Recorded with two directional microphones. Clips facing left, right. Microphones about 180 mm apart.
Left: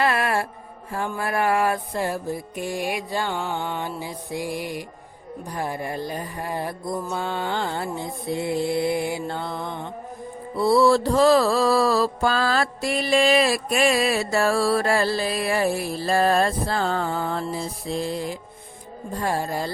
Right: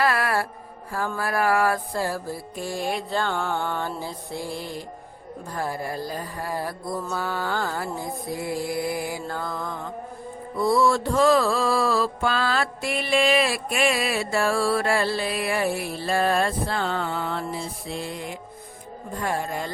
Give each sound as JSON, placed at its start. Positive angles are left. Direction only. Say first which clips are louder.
{"t": 0.0, "sound": "music", "louder": "left 1 dB", "side_deg": 20}
{"t": 5.5, "sound": "mantra", "louder": "left 1 dB", "side_deg": 20}